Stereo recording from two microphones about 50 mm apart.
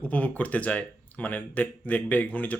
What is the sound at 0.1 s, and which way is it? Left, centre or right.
Speech, left.